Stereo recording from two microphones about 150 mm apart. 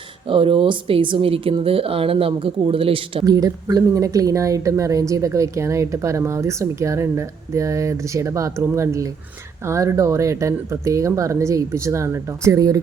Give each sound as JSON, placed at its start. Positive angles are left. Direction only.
{"t": 0.3, "sound": "speech", "side_deg": -35}
{"t": 3.2, "sound": "speech", "side_deg": -25}